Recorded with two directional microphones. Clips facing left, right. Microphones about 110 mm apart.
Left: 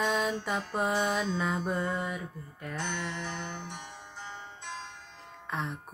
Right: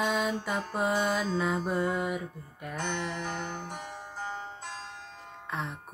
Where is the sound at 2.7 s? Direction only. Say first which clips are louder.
Right 2 dB; 45° right (ahead or behind).